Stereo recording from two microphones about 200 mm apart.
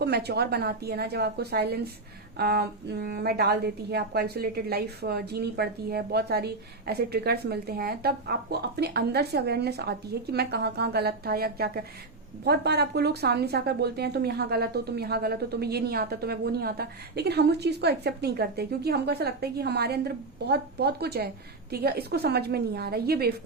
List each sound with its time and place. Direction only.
0.0 s speech: 55° right (ahead or behind)